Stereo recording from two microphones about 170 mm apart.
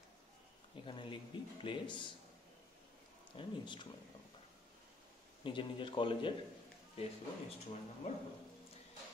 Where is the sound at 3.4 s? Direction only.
30° left (ahead or behind).